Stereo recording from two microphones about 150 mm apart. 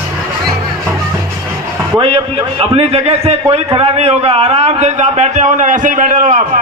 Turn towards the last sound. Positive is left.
turn(degrees=-60)  # may be behind; listen again after turning